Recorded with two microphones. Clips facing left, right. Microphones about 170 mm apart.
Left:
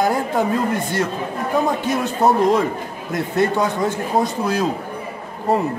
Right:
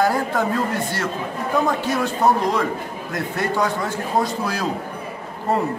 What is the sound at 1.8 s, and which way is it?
A man's voice, 20° left (ahead or behind).